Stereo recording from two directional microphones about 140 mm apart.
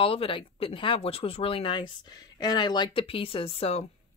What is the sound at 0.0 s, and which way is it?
Speech, 40° left (ahead or behind).